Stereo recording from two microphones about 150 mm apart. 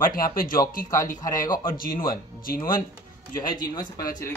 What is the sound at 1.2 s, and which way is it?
Speech, 25° left (ahead or behind).